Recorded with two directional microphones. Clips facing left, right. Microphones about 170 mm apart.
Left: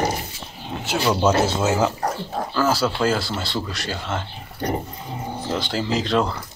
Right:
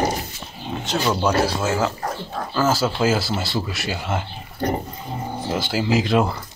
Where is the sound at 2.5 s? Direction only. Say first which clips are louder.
Right 1 dB; centre (ahead or behind).